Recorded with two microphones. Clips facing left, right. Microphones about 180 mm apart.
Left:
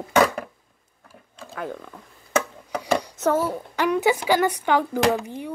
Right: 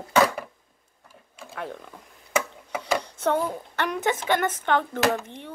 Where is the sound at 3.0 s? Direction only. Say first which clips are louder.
Left 3 dB; 5° left (ahead or behind).